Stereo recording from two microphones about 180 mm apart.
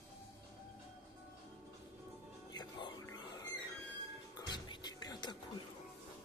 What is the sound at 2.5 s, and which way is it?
Music, 25° left (ahead or behind).